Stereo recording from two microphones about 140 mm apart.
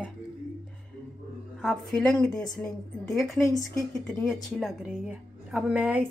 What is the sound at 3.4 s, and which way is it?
Speech, 25° left (ahead or behind).